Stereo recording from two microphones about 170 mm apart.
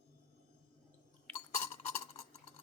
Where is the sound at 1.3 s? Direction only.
10° left (ahead or behind).